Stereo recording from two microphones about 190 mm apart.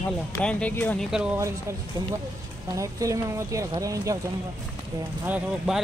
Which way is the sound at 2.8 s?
15° right (ahead or behind).